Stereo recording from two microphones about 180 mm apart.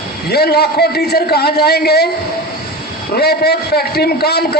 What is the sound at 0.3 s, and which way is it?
A man's voice, 65° left (ahead or behind).